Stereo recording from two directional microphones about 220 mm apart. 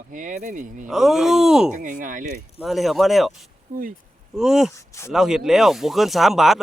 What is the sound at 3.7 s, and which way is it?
Speech, 35° right (ahead or behind).